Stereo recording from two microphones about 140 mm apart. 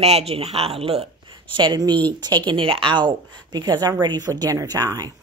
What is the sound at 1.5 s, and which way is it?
A woman's voice, 30° right (ahead or behind).